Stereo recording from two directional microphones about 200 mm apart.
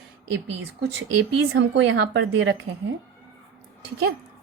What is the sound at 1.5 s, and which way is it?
A woman's voice, 70° right (ahead or behind).